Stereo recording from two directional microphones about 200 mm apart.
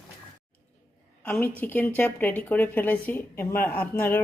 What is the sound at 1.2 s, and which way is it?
A woman's voice, 10° left (ahead or behind).